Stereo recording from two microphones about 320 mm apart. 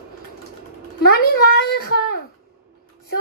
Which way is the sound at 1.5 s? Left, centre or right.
Left.